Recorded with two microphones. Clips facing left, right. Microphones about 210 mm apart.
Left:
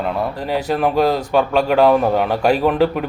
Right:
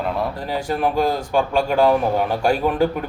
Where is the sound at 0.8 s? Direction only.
70° left (ahead or behind).